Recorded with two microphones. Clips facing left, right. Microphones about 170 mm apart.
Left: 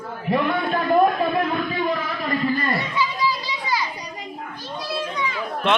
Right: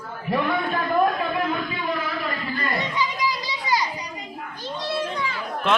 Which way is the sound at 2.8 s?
15° right (ahead or behind).